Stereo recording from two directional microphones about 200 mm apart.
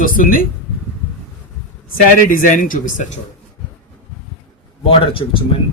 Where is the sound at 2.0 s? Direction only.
40° left (ahead or behind).